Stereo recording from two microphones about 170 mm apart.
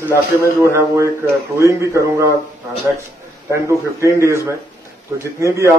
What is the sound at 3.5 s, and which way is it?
A man's voice, 15° right (ahead or behind).